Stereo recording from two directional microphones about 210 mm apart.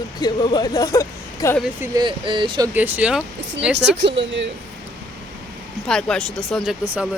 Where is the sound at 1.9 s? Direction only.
20° right (ahead or behind).